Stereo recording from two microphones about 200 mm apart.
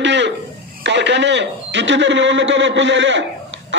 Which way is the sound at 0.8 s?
60° right (ahead or behind).